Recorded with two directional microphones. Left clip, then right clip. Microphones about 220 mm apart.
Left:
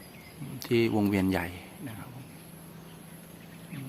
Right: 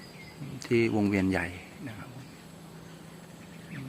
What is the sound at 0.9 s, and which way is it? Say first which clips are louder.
Speech: even; 5° left (ahead or behind).